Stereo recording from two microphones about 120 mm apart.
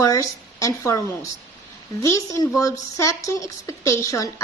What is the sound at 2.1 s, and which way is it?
A woman's voice, 25° left (ahead or behind).